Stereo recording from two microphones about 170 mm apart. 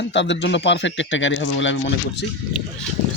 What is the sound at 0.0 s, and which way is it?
Speech, 90° left.